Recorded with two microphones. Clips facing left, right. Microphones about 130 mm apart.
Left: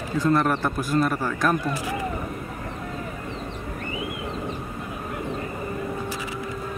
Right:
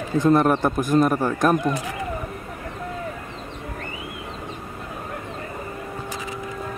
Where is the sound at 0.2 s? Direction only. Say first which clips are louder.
Right 4 dB; 20° right (ahead or behind).